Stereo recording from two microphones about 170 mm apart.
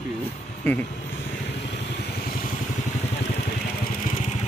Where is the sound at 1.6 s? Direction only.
85° left; by 2.4 s 65° left (ahead or behind).